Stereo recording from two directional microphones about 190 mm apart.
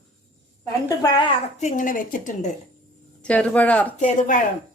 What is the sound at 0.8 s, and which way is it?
Speech, 20° left (ahead or behind).